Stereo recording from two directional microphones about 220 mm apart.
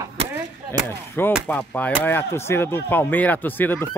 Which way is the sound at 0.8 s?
10° left (ahead or behind).